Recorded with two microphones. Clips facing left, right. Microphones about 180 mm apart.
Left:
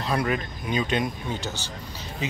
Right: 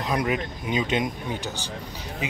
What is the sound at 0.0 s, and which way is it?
A man's voice, 15° right (ahead or behind).